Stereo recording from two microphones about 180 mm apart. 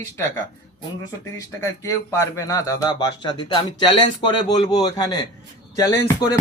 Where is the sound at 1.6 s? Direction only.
15° left (ahead or behind).